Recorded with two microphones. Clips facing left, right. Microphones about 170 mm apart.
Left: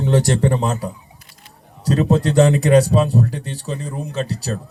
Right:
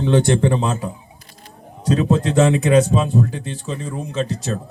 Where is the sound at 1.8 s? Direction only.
40° left (ahead or behind).